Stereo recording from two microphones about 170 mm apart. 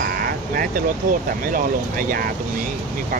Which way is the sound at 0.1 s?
60° right (ahead or behind).